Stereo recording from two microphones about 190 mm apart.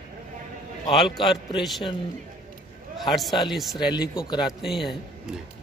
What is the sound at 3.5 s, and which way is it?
Speech, centre (ahead or behind).